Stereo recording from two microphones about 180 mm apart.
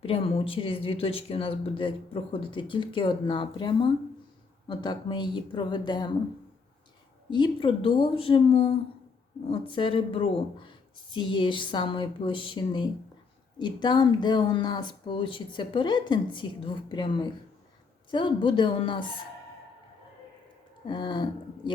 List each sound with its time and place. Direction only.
0.0 s speech: 30° left (ahead or behind)
7.3 s speech: 25° left (ahead or behind)
18.1 s speech: 30° left (ahead or behind)
20.8 s speech: 25° left (ahead or behind)